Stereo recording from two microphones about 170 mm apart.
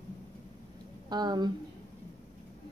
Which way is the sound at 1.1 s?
25° right (ahead or behind).